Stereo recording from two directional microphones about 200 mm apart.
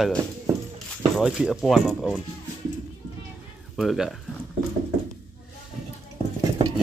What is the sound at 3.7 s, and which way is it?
Speech, centre (ahead or behind).